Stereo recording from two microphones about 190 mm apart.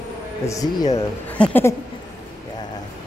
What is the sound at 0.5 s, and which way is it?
Speech, 20° left (ahead or behind).